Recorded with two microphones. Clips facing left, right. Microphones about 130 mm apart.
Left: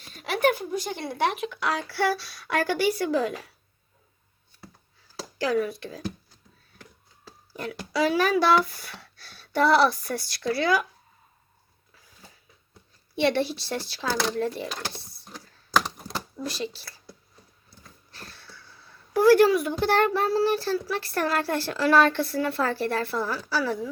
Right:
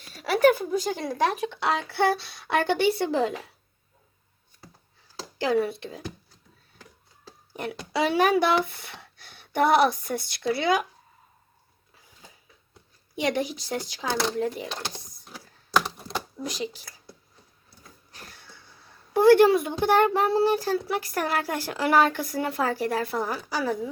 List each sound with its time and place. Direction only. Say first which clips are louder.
0.4 s speech: right 4 dB; 50° right (ahead or behind)
1.1 s speech: even; 35° right (ahead or behind)
5.4 s speech: right 1 dB; 25° right (ahead or behind)
7.5 s speech: even; 20° right (ahead or behind)
13.4 s a woman's voice: left 1 dB; 15° right (ahead or behind)
16.5 s a woman's voice: even; 15° right (ahead or behind)